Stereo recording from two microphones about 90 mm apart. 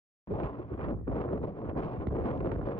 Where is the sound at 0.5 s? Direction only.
45° left (ahead or behind).